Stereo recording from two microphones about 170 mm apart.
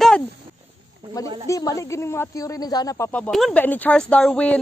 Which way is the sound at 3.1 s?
5° left (ahead or behind).